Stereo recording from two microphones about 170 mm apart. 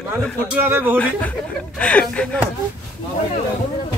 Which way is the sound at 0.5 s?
10° right (ahead or behind).